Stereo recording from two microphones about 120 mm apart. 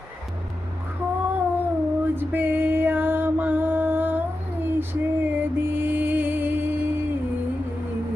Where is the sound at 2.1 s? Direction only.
15° right (ahead or behind).